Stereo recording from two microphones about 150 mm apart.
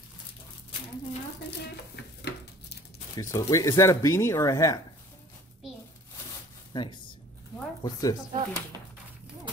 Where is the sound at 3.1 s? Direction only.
20° left (ahead or behind).